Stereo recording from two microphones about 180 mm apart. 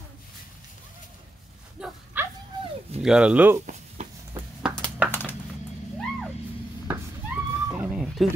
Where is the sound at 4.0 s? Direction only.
40° right (ahead or behind).